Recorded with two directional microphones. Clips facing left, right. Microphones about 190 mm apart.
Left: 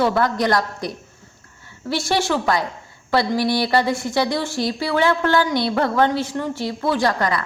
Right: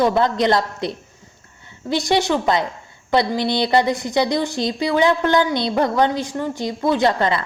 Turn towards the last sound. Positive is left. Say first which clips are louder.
# right 2 dB
turn(degrees=-25)  # may be behind; listen again after turning